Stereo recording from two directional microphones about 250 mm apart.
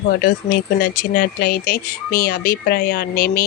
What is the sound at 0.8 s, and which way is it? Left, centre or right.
Speech, left.